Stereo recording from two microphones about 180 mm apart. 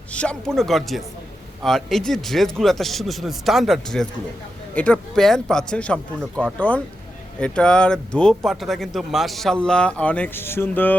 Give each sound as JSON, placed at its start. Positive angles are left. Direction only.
{"t": 0.1, "sound": "speech", "side_deg": 5}